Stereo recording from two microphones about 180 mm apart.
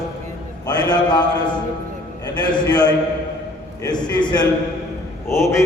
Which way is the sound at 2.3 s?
20° left (ahead or behind).